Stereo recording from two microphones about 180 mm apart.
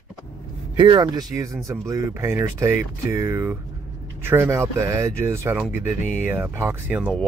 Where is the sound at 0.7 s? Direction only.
25° right (ahead or behind).